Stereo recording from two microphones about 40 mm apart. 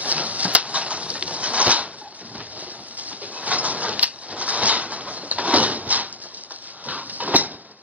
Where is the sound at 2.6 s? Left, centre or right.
Right.